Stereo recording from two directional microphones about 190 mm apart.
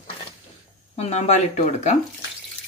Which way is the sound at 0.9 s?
35° left (ahead or behind).